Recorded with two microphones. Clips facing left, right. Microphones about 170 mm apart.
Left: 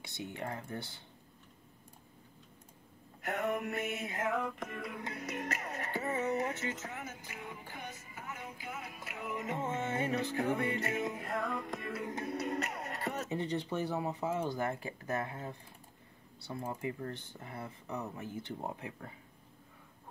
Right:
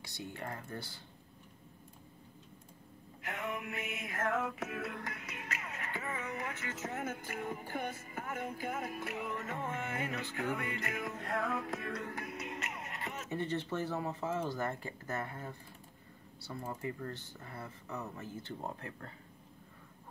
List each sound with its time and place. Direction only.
0.0 s music: 20° left (ahead or behind)
3.3 s music: 45° left (ahead or behind)
4.3 s music: 5° right (ahead or behind)
5.1 s music: 40° left (ahead or behind)
6.9 s music: 50° right (ahead or behind)
9.3 s music: 15° left (ahead or behind)
11.1 s music: centre (ahead or behind)
12.0 s music: 20° left (ahead or behind)
12.3 s music: 35° left (ahead or behind)
13.3 s speech: 15° left (ahead or behind)